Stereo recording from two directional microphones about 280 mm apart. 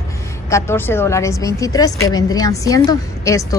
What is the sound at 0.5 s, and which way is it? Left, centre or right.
A woman's voice, centre.